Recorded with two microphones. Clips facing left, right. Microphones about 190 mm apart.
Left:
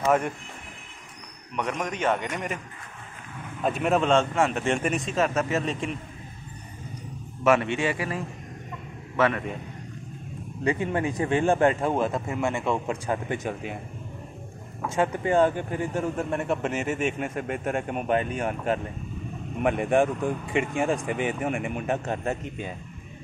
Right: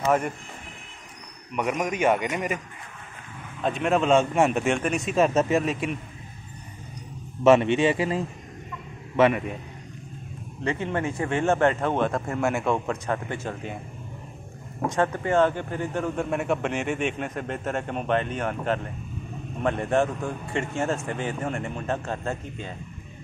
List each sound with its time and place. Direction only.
0.0 s speech: centre (ahead or behind)
1.5 s a man's voice: 5° right (ahead or behind)
3.6 s a man's voice: 5° left (ahead or behind); by 4.6 s 15° right (ahead or behind)
4.6 s speech: centre (ahead or behind)
5.1 s a man's voice: 20° right (ahead or behind)
5.6 s a man's voice: 10° right (ahead or behind)
7.4 s a man's voice: 20° right (ahead or behind)
10.6 s speech: 15° left (ahead or behind); by 12.8 s centre (ahead or behind)
12.8 s speech: 10° left (ahead or behind)
14.9 s speech: 10° left (ahead or behind)